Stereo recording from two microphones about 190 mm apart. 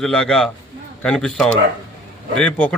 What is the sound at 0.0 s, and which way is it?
A man's voice, 5° left (ahead or behind).